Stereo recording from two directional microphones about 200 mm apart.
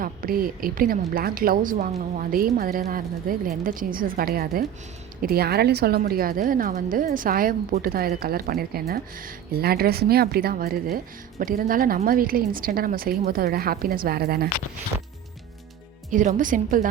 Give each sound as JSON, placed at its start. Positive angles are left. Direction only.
{"t": 0.0, "sound": "a woman's voice", "side_deg": -45}
{"t": 16.1, "sound": "a woman's voice", "side_deg": -40}